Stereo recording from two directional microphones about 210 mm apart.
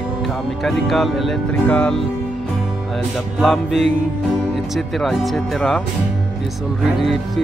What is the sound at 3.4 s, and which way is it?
Speech, centre (ahead or behind).